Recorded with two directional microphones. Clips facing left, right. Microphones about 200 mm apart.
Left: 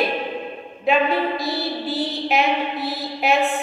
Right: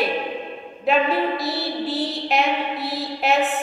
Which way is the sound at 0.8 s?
Centre (ahead or behind).